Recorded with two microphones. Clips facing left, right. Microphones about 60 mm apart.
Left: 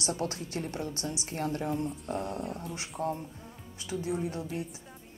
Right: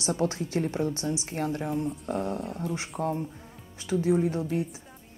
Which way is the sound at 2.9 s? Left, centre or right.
Right.